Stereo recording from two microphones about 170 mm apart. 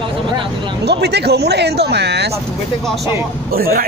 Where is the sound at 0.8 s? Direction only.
75° right (ahead or behind).